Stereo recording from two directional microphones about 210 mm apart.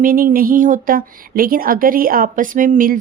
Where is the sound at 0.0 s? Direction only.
40° right (ahead or behind).